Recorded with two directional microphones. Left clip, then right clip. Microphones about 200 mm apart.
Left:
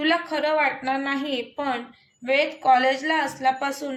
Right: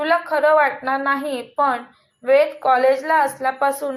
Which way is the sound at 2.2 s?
5° right (ahead or behind).